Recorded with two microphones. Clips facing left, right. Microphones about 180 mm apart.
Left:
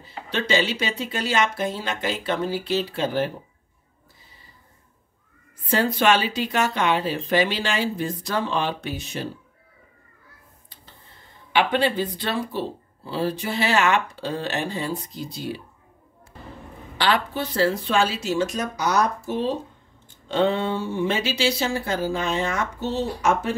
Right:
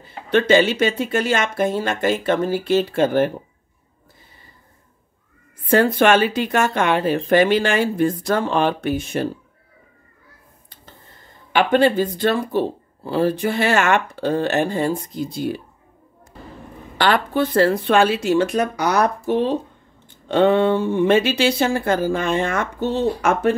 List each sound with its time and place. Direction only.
0.0 s speech: 55° right (ahead or behind)
5.7 s speech: 55° right (ahead or behind)
11.5 s speech: 45° right (ahead or behind)
17.0 s speech: 50° right (ahead or behind)